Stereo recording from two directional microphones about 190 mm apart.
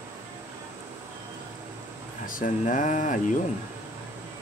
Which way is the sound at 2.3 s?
45° left (ahead or behind).